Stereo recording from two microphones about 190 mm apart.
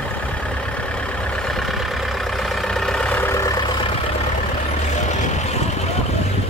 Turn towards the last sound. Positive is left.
turn(degrees=40)  # may be behind; listen again after turning